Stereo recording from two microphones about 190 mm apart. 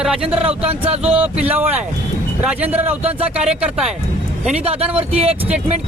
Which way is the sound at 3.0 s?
30° right (ahead or behind).